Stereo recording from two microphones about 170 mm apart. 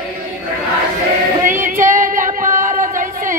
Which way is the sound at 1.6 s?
50° right (ahead or behind).